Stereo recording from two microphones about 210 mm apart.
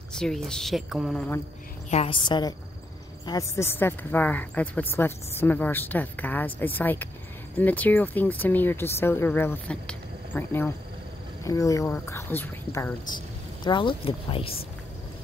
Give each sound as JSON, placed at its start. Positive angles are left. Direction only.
{"t": 0.2, "sound": "a woman's voice", "side_deg": 0}
{"t": 1.9, "sound": "a woman's voice", "side_deg": 25}
{"t": 13.7, "sound": "speech", "side_deg": 25}